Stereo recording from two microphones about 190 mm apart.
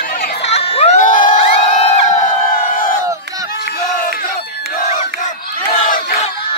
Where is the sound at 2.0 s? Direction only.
45° left (ahead or behind).